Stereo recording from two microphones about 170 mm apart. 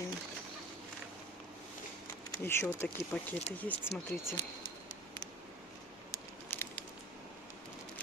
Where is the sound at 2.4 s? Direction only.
15° left (ahead or behind).